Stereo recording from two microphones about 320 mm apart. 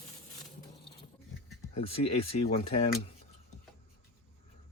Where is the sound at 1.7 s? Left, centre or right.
Centre.